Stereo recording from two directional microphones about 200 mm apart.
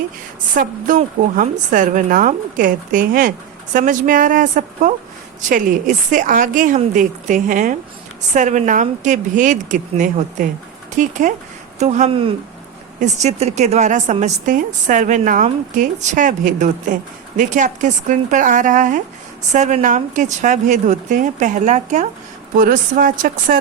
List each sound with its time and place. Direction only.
0.5 s a woman's voice: 45° right (ahead or behind)